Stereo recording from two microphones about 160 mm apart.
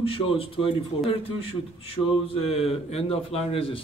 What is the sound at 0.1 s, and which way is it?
A man's voice, 35° left (ahead or behind).